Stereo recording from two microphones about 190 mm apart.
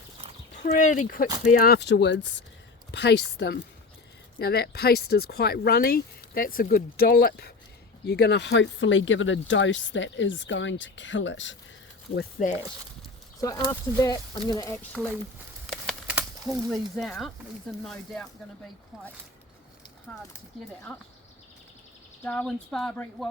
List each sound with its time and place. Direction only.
0.5 s speech: 40° left (ahead or behind)
1.0 s speech: 50° left (ahead or behind); by 11.5 s 75° left (ahead or behind)
12.4 s speech: 45° left (ahead or behind)
13.4 s speech: 20° left (ahead or behind)
15.0 s speech: 5° right (ahead or behind)
15.6 s crumpling: centre (ahead or behind)
16.6 s speech: centre (ahead or behind)
20.1 s speech: 5° left (ahead or behind)
22.2 s speech: 5° left (ahead or behind)